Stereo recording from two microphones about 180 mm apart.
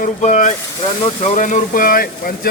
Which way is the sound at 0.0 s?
45° left (ahead or behind).